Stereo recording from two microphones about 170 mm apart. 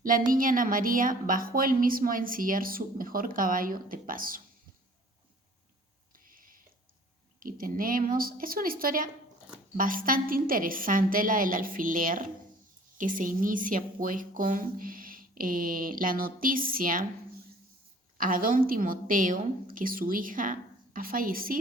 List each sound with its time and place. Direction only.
0.3 s a woman's voice: 55° right (ahead or behind)
6.1 s a sound: 55° right (ahead or behind)
7.3 s a woman's voice: 55° right (ahead or behind)
18.2 s a woman's voice: 55° right (ahead or behind)